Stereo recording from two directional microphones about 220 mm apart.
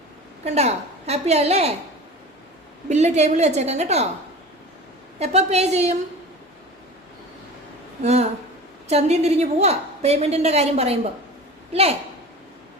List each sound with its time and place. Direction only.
0.4 s a woman's voice: 30° right (ahead or behind)
2.9 s a woman's voice: 30° right (ahead or behind)
5.2 s a woman's voice: 30° right (ahead or behind)
8.0 s a woman's voice: 30° right (ahead or behind)